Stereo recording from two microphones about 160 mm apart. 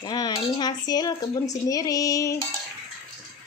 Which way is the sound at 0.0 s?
25° left (ahead or behind).